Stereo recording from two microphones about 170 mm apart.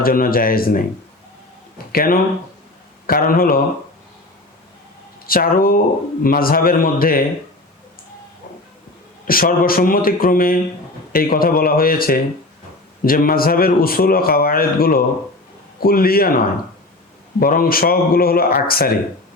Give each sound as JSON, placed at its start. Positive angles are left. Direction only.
{"t": 0.0, "sound": "speech", "side_deg": 60}
{"t": 1.9, "sound": "speech", "side_deg": 60}
{"t": 5.2, "sound": "speech", "side_deg": 60}
{"t": 9.2, "sound": "speech", "side_deg": 60}
{"t": 17.4, "sound": "speech", "side_deg": 60}